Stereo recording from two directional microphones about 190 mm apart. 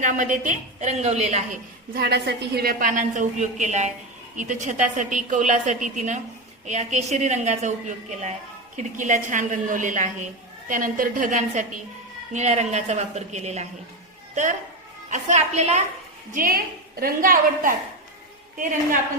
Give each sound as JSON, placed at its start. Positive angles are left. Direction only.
{"t": 0.0, "sound": "a woman's voice", "side_deg": -45}
{"t": 1.9, "sound": "a woman's voice", "side_deg": -55}
{"t": 15.1, "sound": "a woman's voice", "side_deg": -40}
{"t": 16.3, "sound": "a woman's voice", "side_deg": -50}